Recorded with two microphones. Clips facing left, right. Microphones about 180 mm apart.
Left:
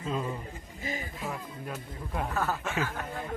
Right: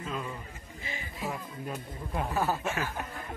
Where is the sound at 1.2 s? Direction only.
15° right (ahead or behind).